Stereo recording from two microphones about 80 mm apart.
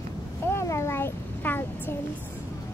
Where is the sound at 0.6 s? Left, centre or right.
Left.